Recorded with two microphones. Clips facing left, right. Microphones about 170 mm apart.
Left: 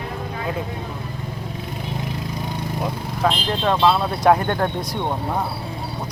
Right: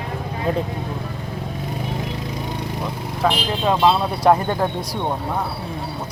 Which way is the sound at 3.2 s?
10° right (ahead or behind).